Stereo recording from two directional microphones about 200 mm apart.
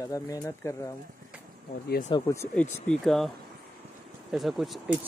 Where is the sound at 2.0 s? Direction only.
20° left (ahead or behind).